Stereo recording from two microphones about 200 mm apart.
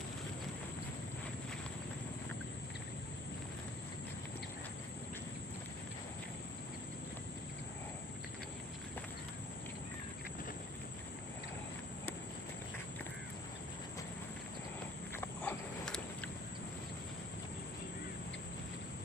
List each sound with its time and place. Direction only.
15.1 s wild animals: 10° left (ahead or behind)